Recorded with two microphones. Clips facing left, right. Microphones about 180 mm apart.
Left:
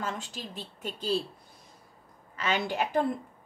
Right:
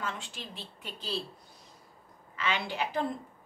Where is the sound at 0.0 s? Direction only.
40° left (ahead or behind).